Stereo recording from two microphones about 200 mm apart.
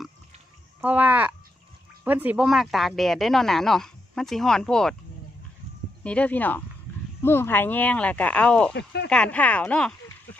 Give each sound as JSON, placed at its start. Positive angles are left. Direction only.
{"t": 0.7, "sound": "speech", "side_deg": -10}
{"t": 6.0, "sound": "speech", "side_deg": 5}
{"t": 8.7, "sound": "speech", "side_deg": 55}
{"t": 9.1, "sound": "speech", "side_deg": 5}